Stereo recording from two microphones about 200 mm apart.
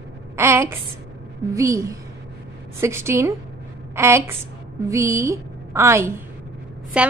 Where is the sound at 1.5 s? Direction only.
15° right (ahead or behind).